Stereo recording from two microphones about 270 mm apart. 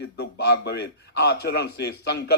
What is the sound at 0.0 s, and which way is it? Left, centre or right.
A man's voice, left.